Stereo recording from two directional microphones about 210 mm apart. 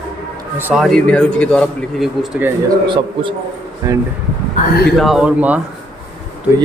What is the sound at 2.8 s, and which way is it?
A man's voice, 25° right (ahead or behind).